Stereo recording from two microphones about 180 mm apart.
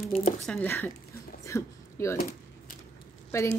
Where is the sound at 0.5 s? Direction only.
10° left (ahead or behind).